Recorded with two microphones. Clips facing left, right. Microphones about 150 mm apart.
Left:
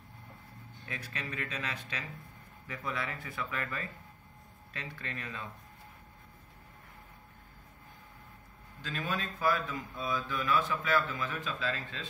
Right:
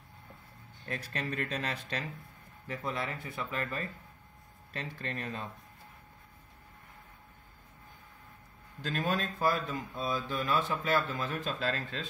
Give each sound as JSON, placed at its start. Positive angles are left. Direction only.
{"t": 0.8, "sound": "speech", "side_deg": -40}
{"t": 8.8, "sound": "a man's voice", "side_deg": -45}